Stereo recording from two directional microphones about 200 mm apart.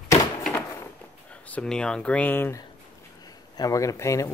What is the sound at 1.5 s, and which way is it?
Speech, 5° left (ahead or behind).